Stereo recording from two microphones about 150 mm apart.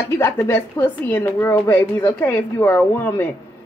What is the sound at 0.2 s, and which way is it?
A woman's voice, 15° left (ahead or behind).